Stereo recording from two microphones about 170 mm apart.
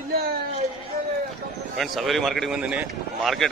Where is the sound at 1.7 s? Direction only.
Centre (ahead or behind).